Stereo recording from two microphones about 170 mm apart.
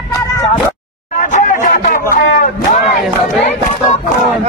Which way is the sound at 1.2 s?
50° left (ahead or behind).